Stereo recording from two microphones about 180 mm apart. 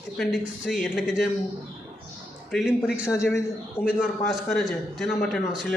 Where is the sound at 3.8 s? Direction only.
Centre (ahead or behind).